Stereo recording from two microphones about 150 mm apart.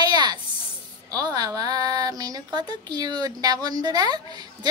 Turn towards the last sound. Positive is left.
turn(degrees=-25)  # may be behind; listen again after turning